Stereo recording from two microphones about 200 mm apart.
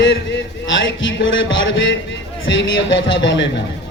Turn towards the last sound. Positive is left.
turn(degrees=65)  # may be behind; listen again after turning